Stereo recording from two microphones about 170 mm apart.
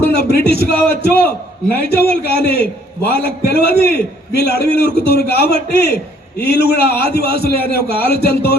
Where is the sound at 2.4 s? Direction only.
65° left (ahead or behind).